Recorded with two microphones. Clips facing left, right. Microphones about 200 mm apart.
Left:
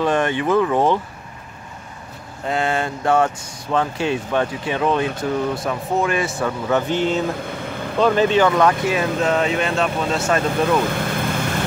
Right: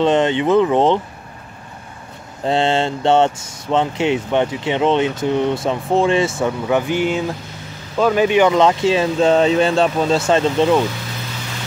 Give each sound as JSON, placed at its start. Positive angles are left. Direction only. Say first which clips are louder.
{"t": 0.0, "sound": "speech", "louder": "right 4 dB", "side_deg": -20}
{"t": 2.4, "sound": "speech", "louder": "right 5 dB", "side_deg": -30}
{"t": 6.4, "sound": "speech", "louder": "right 2 dB", "side_deg": -10}
{"t": 7.3, "sound": "vehicle", "louder": "left 8 dB", "side_deg": 55}
{"t": 8.0, "sound": "speech", "louder": "right 2 dB", "side_deg": -10}
{"t": 10.8, "sound": "vehicle", "louder": "left 1 dB", "side_deg": 55}